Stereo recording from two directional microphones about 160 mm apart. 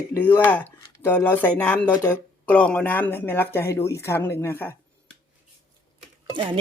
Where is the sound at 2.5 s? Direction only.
10° left (ahead or behind).